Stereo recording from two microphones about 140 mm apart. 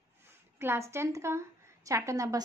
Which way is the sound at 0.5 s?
20° right (ahead or behind).